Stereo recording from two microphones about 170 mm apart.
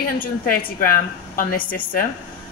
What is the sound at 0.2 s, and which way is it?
Speech, 55° left (ahead or behind).